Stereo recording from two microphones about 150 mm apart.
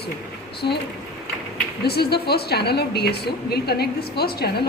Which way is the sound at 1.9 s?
90° left.